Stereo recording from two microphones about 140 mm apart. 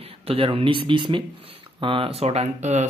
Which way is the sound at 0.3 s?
40° right (ahead or behind).